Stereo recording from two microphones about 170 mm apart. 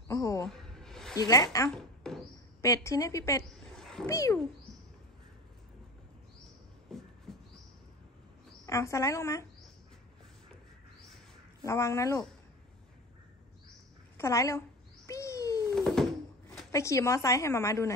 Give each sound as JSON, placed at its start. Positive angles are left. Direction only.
{"t": 0.1, "sound": "speech", "side_deg": 15}
{"t": 0.5, "sound": "a sound", "side_deg": 5}
{"t": 1.1, "sound": "speech", "side_deg": 20}
{"t": 2.0, "sound": "bird", "side_deg": 5}
{"t": 2.6, "sound": "a woman's voice", "side_deg": 20}
{"t": 3.7, "sound": "a sound", "side_deg": 5}
{"t": 4.0, "sound": "a woman's voice", "side_deg": 15}
{"t": 6.9, "sound": "a sound", "side_deg": 0}
{"t": 8.6, "sound": "a woman's voice", "side_deg": 15}
{"t": 11.6, "sound": "a woman's voice", "side_deg": 15}
{"t": 14.1, "sound": "a woman's voice", "side_deg": 15}
{"t": 15.0, "sound": "bird", "side_deg": 15}
{"t": 15.7, "sound": "a sound", "side_deg": 0}
{"t": 16.7, "sound": "a woman's voice", "side_deg": 20}